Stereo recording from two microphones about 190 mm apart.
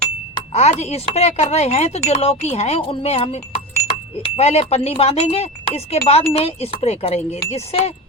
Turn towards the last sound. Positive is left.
turn(degrees=35)  # may be behind; listen again after turning